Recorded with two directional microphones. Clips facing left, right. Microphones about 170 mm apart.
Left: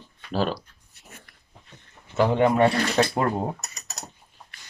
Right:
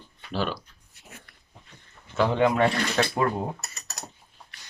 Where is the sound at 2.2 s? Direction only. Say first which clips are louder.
Left 2 dB; 10° left (ahead or behind).